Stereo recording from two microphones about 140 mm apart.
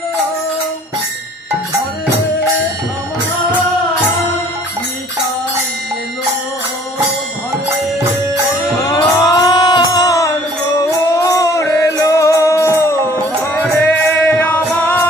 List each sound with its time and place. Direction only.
8.8 s music: 30° left (ahead or behind); by 15.0 s 15° left (ahead or behind)